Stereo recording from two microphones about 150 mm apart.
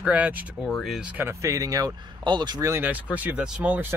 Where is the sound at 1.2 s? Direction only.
20° right (ahead or behind).